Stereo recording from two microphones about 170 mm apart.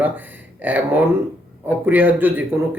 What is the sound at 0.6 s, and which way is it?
Speech, 10° right (ahead or behind).